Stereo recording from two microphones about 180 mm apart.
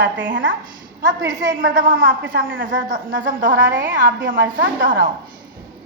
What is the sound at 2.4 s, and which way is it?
Speech, 90° right.